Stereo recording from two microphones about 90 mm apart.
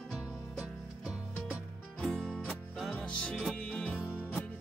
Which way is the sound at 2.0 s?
5° left (ahead or behind).